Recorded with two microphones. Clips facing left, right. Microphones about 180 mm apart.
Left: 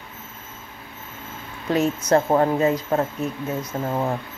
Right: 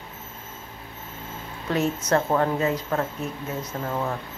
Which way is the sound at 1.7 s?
10° left (ahead or behind).